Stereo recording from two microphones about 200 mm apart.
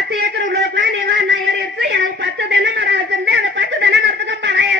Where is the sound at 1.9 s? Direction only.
60° right (ahead or behind).